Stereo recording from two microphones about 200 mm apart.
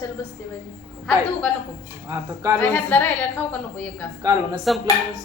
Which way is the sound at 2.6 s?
10° left (ahead or behind).